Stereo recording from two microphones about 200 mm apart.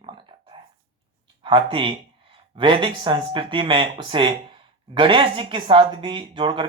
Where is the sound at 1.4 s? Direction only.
25° right (ahead or behind).